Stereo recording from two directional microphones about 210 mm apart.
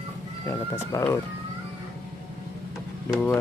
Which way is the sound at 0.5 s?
10° left (ahead or behind).